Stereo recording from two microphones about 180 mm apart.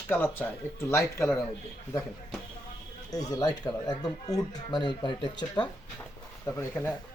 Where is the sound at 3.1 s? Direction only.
20° left (ahead or behind).